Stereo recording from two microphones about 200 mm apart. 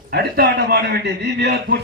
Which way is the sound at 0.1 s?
55° right (ahead or behind).